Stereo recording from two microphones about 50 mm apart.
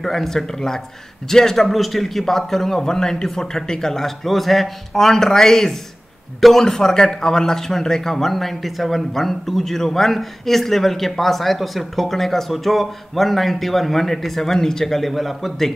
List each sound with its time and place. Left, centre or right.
0.0 s a man's voice: centre